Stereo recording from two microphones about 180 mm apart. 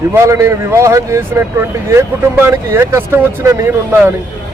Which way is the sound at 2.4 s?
15° right (ahead or behind).